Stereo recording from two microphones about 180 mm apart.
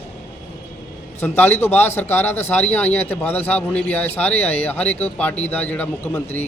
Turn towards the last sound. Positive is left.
turn(degrees=10)  # may be behind; listen again after turning